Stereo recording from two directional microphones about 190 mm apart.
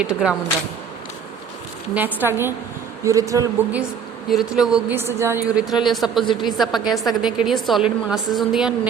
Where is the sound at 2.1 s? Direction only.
10° right (ahead or behind).